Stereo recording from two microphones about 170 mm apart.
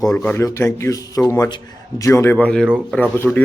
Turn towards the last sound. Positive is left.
turn(degrees=10)  # may be behind; listen again after turning